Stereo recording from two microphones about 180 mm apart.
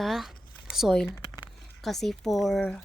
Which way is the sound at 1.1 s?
20° left (ahead or behind).